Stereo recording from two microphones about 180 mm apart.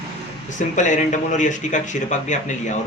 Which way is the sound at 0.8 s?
45° left (ahead or behind).